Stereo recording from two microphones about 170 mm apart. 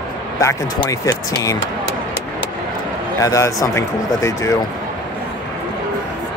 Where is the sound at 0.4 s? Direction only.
20° left (ahead or behind).